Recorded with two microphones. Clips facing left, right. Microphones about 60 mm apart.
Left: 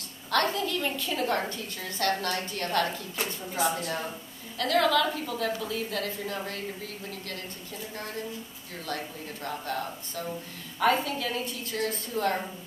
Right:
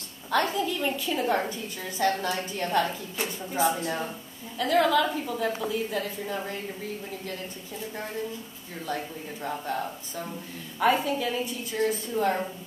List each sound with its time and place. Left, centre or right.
0.3 s a woman's voice: centre
8.8 s a woman's voice: centre